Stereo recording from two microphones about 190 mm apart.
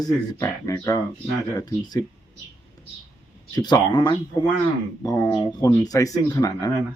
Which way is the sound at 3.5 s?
20° left (ahead or behind).